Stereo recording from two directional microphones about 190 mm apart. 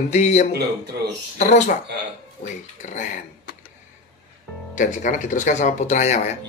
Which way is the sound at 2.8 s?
40° left (ahead or behind).